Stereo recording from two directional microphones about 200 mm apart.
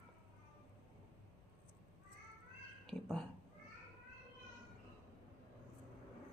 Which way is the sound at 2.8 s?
5° left (ahead or behind).